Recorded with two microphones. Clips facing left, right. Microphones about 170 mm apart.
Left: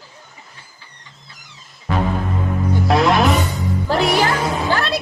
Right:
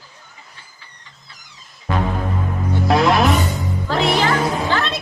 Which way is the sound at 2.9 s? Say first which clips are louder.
Even; centre (ahead or behind).